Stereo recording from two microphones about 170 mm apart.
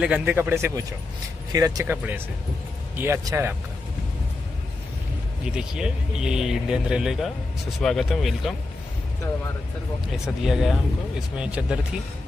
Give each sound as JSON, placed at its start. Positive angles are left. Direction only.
{"t": 0.0, "sound": "speech", "side_deg": -10}
{"t": 5.4, "sound": "speech", "side_deg": -5}
{"t": 10.0, "sound": "speech", "side_deg": 0}